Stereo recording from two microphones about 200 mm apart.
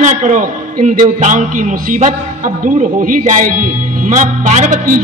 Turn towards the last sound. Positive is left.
turn(degrees=-40)  # may be behind; listen again after turning